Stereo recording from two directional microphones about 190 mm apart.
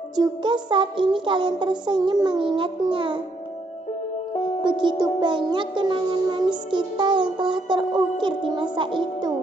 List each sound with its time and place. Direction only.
0.1 s music: 25° right (ahead or behind)
4.6 s music: 25° right (ahead or behind)